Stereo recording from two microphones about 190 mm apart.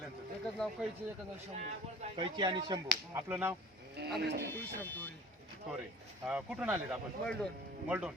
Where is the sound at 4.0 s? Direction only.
60° right (ahead or behind).